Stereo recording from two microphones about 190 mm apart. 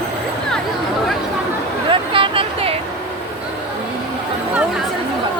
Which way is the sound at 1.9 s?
25° right (ahead or behind).